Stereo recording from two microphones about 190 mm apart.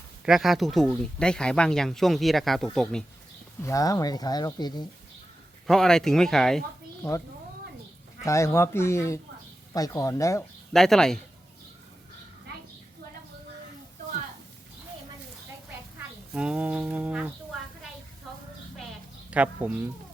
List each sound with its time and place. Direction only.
0.3 s speech: centre (ahead or behind)
3.6 s speech: 15° left (ahead or behind)
5.6 s speech: centre (ahead or behind)
8.2 s speech: 15° left (ahead or behind)
10.7 s speech: centre (ahead or behind)
16.3 s speech: 5° right (ahead or behind)
19.3 s speech: 5° right (ahead or behind)